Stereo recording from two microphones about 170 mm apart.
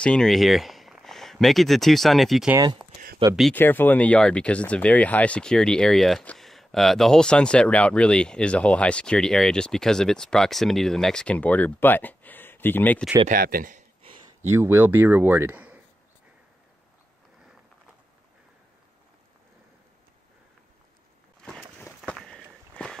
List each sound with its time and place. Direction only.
0.0 s speech: 5° left (ahead or behind)
3.5 s speech: 10° left (ahead or behind)
13.3 s speech: 60° right (ahead or behind)
14.5 s speech: 15° right (ahead or behind)
21.5 s a sound: centre (ahead or behind)
21.8 s walk: 5° left (ahead or behind)